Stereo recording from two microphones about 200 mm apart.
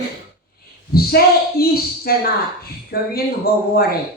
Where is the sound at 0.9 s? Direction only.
50° left (ahead or behind).